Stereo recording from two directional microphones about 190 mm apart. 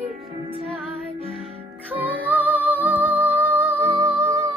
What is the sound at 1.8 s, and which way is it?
Music, 10° right (ahead or behind).